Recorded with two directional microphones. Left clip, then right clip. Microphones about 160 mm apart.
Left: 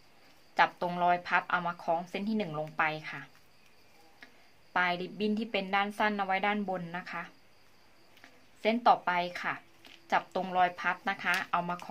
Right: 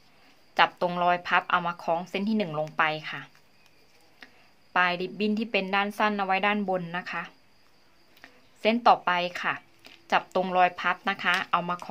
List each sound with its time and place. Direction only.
0.6 s a woman's voice: 30° right (ahead or behind)
4.2 s tick-tock: 30° right (ahead or behind)
4.7 s a woman's voice: 25° right (ahead or behind)
8.6 s a woman's voice: 30° right (ahead or behind)